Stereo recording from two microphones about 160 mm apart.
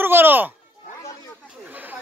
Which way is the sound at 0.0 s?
15° right (ahead or behind).